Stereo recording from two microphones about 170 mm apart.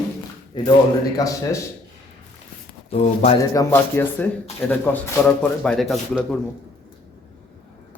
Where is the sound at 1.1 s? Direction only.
20° left (ahead or behind).